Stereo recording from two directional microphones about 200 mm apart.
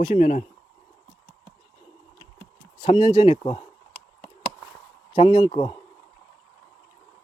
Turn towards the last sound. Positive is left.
turn(degrees=30)  # may be behind; listen again after turning